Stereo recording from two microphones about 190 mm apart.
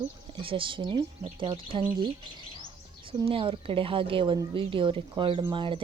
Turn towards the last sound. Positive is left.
turn(degrees=-25)  # may be behind; listen again after turning